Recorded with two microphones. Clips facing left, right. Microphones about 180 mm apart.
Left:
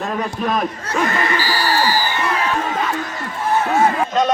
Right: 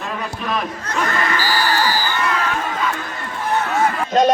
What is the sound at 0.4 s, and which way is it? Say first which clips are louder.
Speech: left 4 dB; 45° left (ahead or behind).